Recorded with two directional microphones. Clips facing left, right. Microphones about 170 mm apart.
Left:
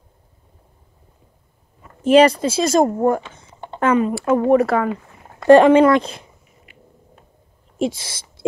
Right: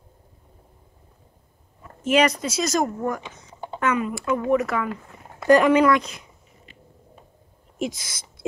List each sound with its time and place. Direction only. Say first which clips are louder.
2.0 s speech: left 8 dB; 30° left (ahead or behind)
7.8 s speech: left 6 dB; 30° left (ahead or behind)